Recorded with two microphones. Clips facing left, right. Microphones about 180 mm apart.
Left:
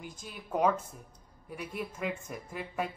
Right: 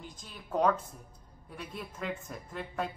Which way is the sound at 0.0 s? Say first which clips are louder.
Left 3 dB; 5° left (ahead or behind).